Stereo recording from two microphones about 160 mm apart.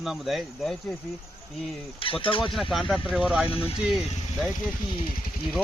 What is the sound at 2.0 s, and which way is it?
Speech, 35° left (ahead or behind).